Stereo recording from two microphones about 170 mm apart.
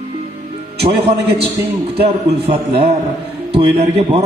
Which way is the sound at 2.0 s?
35° right (ahead or behind).